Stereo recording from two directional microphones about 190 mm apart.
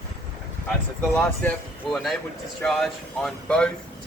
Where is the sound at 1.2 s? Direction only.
10° left (ahead or behind).